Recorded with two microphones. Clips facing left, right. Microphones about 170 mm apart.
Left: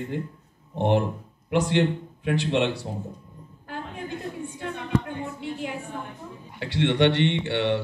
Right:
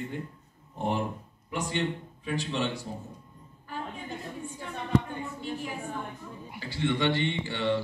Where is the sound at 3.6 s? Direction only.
75° left (ahead or behind).